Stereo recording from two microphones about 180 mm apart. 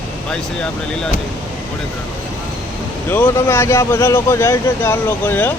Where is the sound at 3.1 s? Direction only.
10° left (ahead or behind).